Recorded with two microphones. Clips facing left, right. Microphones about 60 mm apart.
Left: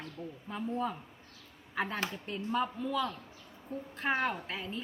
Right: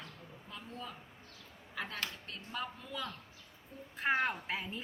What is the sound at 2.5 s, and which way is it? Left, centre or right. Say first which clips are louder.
Speech: left 9 dB; centre.